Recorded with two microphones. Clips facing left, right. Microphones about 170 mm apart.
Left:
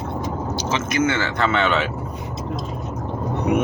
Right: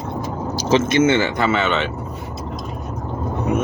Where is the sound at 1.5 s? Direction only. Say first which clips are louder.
Right 1 dB; 5° right (ahead or behind).